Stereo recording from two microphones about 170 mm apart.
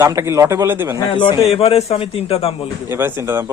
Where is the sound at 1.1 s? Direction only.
30° left (ahead or behind).